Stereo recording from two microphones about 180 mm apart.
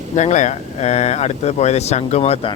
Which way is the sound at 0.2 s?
40° left (ahead or behind).